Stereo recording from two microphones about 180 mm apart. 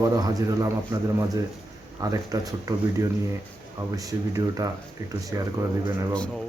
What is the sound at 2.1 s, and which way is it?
A man's voice, 20° right (ahead or behind).